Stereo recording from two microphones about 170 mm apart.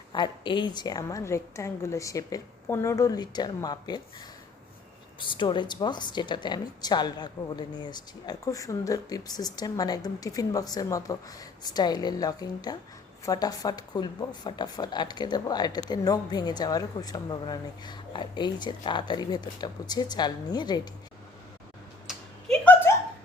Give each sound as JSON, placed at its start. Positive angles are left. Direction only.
{"t": 0.1, "sound": "speech", "side_deg": 25}
{"t": 5.2, "sound": "speech", "side_deg": 30}
{"t": 22.0, "sound": "a sound", "side_deg": 5}